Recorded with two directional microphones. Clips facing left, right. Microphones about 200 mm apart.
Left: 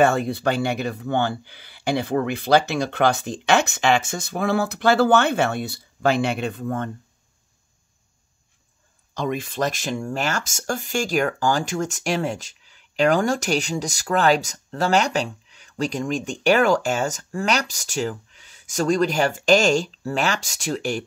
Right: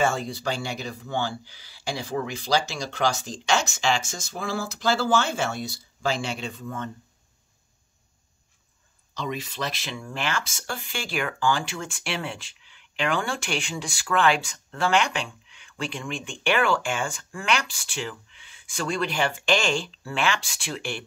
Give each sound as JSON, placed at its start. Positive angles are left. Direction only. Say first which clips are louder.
{"t": 0.0, "sound": "speech", "louder": "left 7 dB", "side_deg": 60}
{"t": 9.1, "sound": "speech", "louder": "left 6 dB", "side_deg": 50}